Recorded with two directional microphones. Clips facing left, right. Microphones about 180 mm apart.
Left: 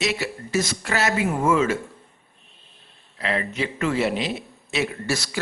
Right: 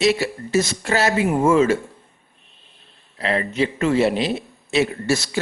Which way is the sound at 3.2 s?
30° right (ahead or behind).